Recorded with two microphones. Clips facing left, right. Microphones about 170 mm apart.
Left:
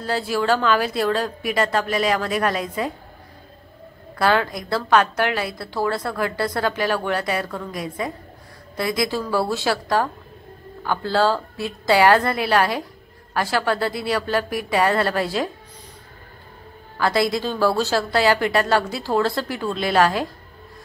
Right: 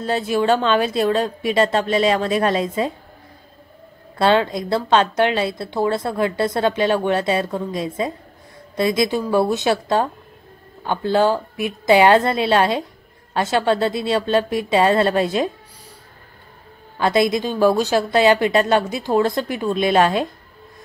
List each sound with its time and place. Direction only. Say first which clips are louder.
0.0 s a woman's voice: right 3 dB; 20° right (ahead or behind)
4.2 s a woman's voice: right 3 dB; 25° right (ahead or behind)
16.9 s a woman's voice: right 3 dB; 20° right (ahead or behind)